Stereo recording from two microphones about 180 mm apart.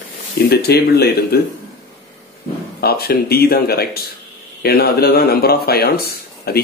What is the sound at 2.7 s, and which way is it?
Speech, 60° left (ahead or behind).